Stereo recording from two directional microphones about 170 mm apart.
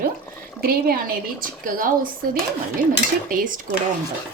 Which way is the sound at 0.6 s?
65° right (ahead or behind).